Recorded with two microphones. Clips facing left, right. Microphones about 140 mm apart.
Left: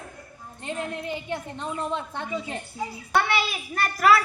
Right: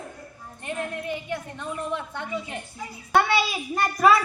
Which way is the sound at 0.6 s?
25° left (ahead or behind).